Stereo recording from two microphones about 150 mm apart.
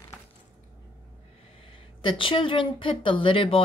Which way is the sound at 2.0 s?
35° left (ahead or behind).